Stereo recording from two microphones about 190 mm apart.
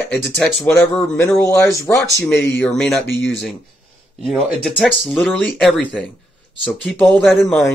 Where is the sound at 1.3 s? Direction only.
15° left (ahead or behind).